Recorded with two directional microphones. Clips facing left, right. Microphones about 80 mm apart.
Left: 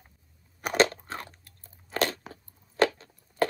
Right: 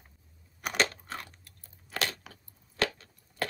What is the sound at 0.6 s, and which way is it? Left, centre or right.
Crunch, left.